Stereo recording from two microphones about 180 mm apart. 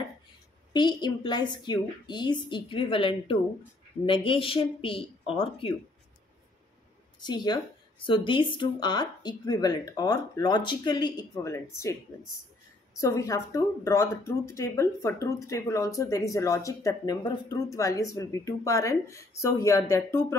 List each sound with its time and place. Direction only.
0.7 s a woman's voice: 25° left (ahead or behind)
7.2 s a woman's voice: 25° left (ahead or behind)
13.0 s speech: 20° left (ahead or behind)